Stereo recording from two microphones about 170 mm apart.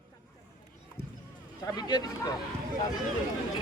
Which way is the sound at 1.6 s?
25° left (ahead or behind).